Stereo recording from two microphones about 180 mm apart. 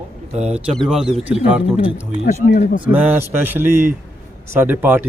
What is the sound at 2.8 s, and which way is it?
Speech, 10° right (ahead or behind).